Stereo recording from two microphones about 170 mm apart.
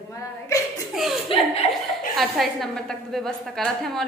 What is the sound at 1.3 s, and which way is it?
Laughter, 30° left (ahead or behind).